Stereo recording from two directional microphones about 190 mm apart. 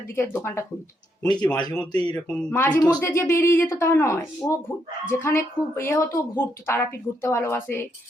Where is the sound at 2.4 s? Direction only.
10° left (ahead or behind).